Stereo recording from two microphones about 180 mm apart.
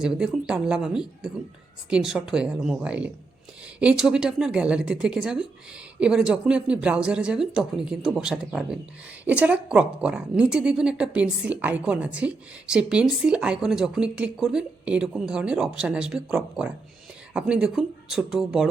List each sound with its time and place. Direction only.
0.0 s speech: 5° right (ahead or behind)